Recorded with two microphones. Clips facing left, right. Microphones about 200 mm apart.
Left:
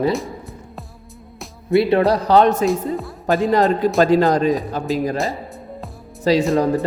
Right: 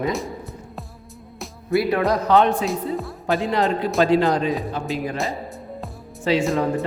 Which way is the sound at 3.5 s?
45° left (ahead or behind).